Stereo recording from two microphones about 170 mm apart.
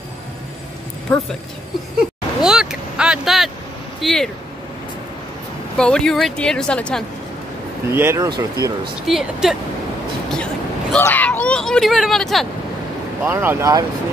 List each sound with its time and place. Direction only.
2.0 s vehicle: 5° right (ahead or behind)
4.0 s speech: centre (ahead or behind)
5.8 s speech: 5° left (ahead or behind)
7.9 s speech: 15° right (ahead or behind)
9.0 s speech: centre (ahead or behind)
13.2 s speech: 10° right (ahead or behind)